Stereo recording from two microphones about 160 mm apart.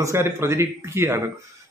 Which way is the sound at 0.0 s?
15° right (ahead or behind).